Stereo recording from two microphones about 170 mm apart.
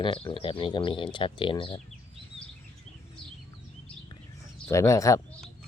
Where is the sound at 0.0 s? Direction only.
30° left (ahead or behind).